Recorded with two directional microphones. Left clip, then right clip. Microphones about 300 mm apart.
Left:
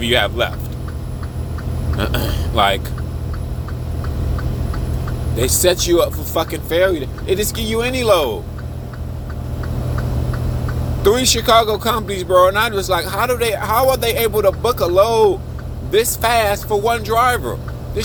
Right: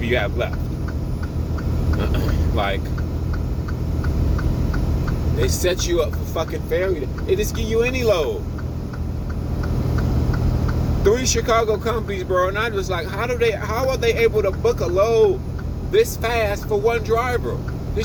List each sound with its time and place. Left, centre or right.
0.0 s speech: left
2.0 s speech: left
5.4 s speech: left
11.0 s speech: left